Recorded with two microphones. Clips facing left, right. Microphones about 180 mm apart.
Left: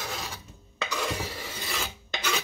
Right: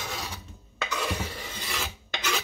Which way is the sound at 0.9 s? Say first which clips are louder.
Even; 10° left (ahead or behind).